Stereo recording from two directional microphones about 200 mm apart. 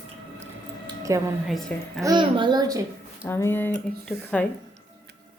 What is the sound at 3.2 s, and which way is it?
A woman's voice, 10° left (ahead or behind).